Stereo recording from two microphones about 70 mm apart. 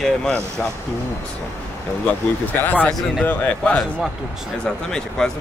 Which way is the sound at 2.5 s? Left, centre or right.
Left.